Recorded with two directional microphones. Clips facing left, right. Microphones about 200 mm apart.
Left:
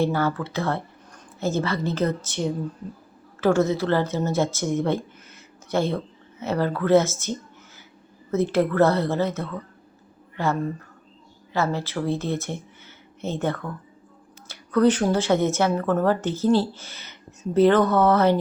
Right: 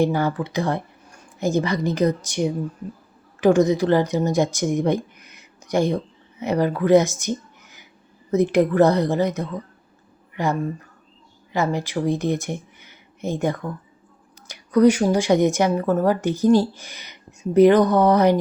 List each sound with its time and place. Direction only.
0.0 s speech: 15° right (ahead or behind)